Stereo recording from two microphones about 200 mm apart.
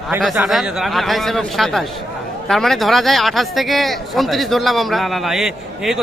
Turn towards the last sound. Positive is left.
turn(degrees=0)  # may be behind; listen again after turning